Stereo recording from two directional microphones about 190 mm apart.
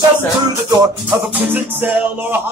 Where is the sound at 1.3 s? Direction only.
10° right (ahead or behind).